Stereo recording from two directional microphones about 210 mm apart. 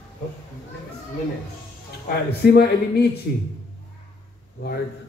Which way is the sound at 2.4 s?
50° left (ahead or behind).